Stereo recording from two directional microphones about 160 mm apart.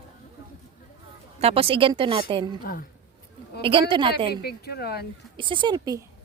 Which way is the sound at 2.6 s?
65° left (ahead or behind).